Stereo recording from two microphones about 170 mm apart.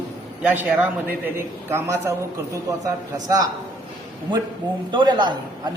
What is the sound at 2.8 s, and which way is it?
Speech, 20° right (ahead or behind).